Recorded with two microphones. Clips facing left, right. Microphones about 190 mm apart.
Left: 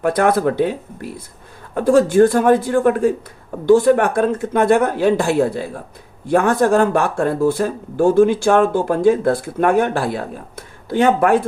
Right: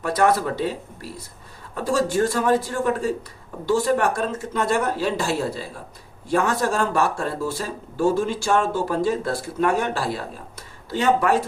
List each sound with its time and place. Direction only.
0.0 s speech: 55° left (ahead or behind)